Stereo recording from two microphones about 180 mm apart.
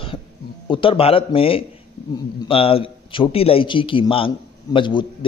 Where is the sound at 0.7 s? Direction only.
30° left (ahead or behind).